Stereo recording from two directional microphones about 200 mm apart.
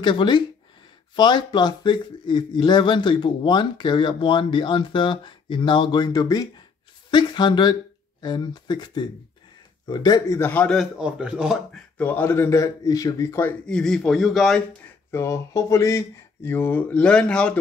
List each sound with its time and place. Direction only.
0.0 s a man's voice: 25° left (ahead or behind); by 11.8 s 5° right (ahead or behind)
12.0 s a man's voice: 10° left (ahead or behind)
15.0 s a man's voice: 15° left (ahead or behind)